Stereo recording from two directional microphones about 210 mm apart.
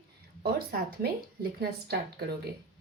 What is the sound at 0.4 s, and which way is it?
A woman's voice, 45° right (ahead or behind).